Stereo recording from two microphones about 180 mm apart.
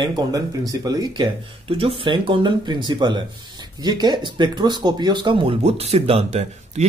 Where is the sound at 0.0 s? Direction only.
25° right (ahead or behind).